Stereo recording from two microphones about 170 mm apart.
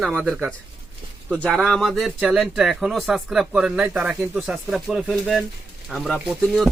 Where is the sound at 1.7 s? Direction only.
Centre (ahead or behind).